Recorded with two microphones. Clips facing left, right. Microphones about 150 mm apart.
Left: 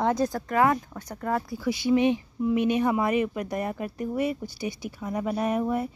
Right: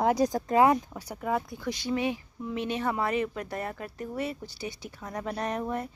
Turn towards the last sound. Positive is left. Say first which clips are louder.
# left 5 dB
turn(degrees=10)  # may be behind; listen again after turning